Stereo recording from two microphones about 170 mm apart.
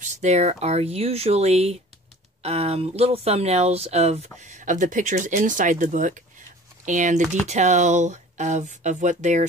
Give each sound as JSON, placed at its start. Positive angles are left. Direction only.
{"t": 0.0, "sound": "speech", "side_deg": -45}